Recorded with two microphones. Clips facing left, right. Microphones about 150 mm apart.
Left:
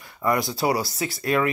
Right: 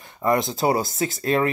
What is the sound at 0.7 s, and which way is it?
Speech, 45° right (ahead or behind).